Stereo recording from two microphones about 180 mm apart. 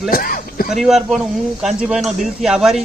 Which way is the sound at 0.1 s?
50° left (ahead or behind).